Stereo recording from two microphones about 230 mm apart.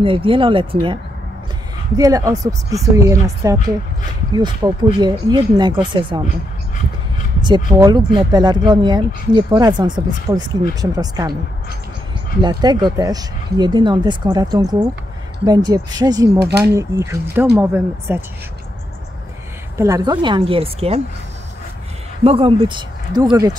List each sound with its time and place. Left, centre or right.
0.0 s speech: right
2.0 s speech: centre
7.4 s speech: centre
12.4 s speech: centre
19.8 s speech: centre
22.2 s speech: right